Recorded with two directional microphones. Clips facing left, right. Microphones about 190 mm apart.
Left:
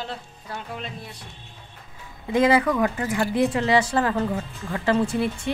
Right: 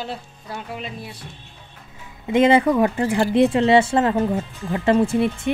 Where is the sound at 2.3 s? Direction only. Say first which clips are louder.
Right 4 dB; 25° right (ahead or behind).